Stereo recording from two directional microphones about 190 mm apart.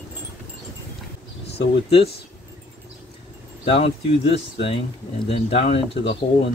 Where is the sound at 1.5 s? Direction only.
30° left (ahead or behind).